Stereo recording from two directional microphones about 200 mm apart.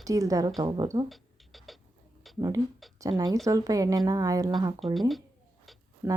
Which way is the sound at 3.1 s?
20° right (ahead or behind).